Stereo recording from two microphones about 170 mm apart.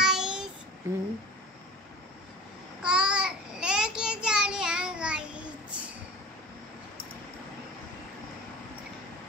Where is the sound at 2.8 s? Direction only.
5° right (ahead or behind).